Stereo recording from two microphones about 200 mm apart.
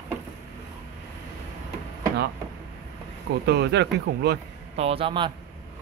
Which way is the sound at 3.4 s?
55° right (ahead or behind).